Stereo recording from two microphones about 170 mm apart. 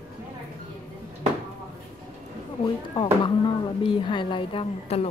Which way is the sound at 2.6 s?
25° left (ahead or behind).